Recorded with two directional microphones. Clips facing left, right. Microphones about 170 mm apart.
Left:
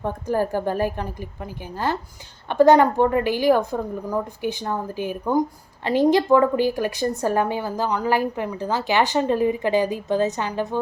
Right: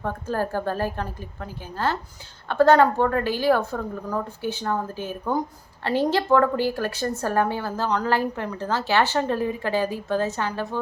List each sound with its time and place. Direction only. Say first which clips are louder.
0.0 s a woman's voice: left 3 dB; 15° left (ahead or behind)